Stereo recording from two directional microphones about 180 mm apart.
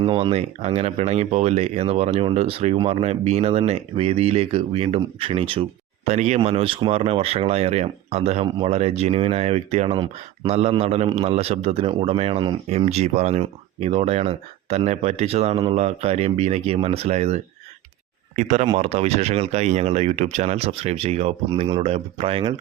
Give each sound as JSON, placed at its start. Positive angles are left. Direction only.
{"t": 0.0, "sound": "speech", "side_deg": -30}